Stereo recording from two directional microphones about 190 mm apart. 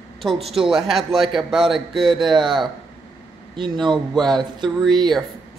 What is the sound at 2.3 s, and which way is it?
Speech, 25° right (ahead or behind).